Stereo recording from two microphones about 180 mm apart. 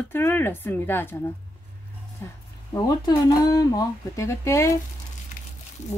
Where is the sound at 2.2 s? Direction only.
15° left (ahead or behind).